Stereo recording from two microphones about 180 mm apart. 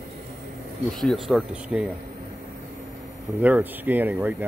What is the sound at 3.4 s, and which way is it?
Speech, 10° right (ahead or behind).